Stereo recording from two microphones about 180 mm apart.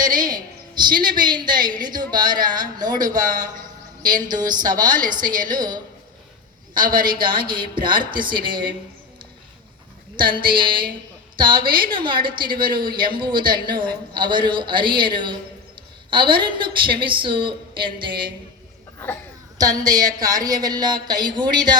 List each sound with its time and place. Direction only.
0.0 s a sound: 50° right (ahead or behind)
0.3 s a man's voice: 25° right (ahead or behind)
4.6 s a woman's voice: 50° right (ahead or behind)
7.0 s a man's voice: 25° right (ahead or behind)
10.2 s a man's voice: 25° right (ahead or behind)
19.5 s a man's voice: 20° right (ahead or behind)